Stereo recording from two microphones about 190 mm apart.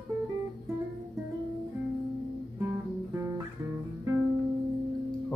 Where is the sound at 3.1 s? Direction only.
15° right (ahead or behind).